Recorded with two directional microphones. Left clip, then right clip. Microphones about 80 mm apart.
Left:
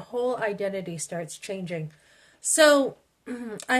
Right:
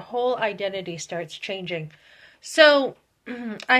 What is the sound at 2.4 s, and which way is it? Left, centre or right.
A woman's voice, left.